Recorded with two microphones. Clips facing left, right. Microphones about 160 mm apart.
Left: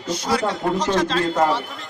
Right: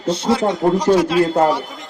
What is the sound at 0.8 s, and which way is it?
Speech, 10° right (ahead or behind).